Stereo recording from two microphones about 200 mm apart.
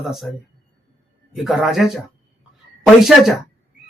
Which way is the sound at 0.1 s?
Centre (ahead or behind).